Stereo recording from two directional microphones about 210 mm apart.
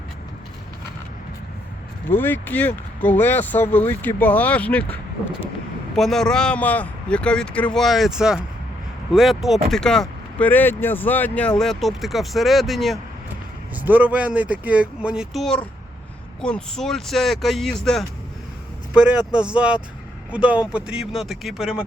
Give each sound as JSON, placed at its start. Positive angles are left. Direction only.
{"t": 2.0, "sound": "speech", "side_deg": 10}